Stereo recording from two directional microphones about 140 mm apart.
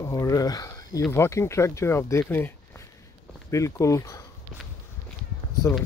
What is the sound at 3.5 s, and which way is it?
Speech, 20° left (ahead or behind).